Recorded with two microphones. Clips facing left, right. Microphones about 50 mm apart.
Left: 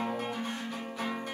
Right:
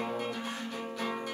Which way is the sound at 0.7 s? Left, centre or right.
Centre.